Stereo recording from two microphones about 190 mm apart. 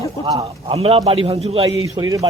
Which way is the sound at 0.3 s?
30° right (ahead or behind).